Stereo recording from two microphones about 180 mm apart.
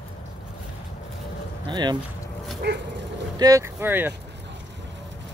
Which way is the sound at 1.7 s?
25° right (ahead or behind).